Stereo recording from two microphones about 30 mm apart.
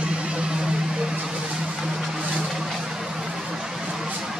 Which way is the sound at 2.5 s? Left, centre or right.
Centre.